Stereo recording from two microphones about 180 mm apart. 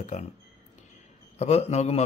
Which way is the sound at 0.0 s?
40° left (ahead or behind).